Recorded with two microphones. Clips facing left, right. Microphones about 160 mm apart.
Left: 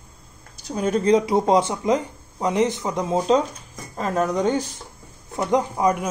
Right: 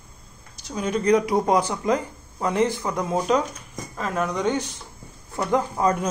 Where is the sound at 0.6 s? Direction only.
40° left (ahead or behind).